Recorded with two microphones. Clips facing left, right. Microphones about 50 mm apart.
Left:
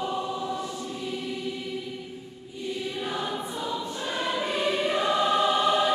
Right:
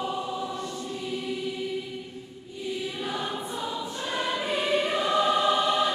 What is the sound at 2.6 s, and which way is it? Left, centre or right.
Choir, centre.